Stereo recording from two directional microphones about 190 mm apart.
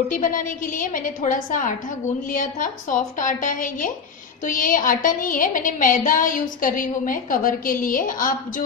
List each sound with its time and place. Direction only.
0.1 s a woman's voice: 45° left (ahead or behind)